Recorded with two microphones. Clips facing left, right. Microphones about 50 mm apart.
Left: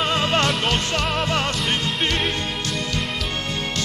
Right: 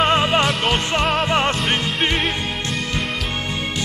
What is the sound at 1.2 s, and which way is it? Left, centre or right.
Music, right.